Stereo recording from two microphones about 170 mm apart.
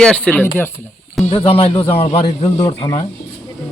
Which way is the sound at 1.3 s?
35° left (ahead or behind).